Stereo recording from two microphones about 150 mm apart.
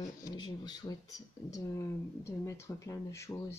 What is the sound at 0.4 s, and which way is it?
Speech, 25° left (ahead or behind).